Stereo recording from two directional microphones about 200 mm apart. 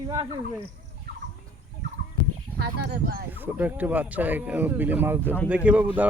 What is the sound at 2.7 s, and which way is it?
Speech, 45° right (ahead or behind).